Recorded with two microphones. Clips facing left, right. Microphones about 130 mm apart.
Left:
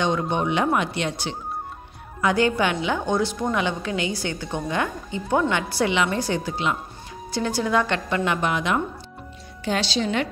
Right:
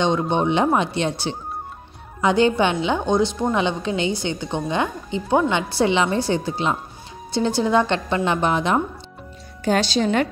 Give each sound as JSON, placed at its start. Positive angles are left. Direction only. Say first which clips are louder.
{"t": 0.0, "sound": "a woman's voice", "louder": "right 3 dB", "side_deg": -25}
{"t": 9.7, "sound": "a woman's voice", "louder": "right 5 dB", "side_deg": -45}